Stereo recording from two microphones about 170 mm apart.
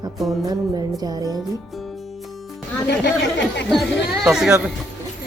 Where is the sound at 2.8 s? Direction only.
90° left.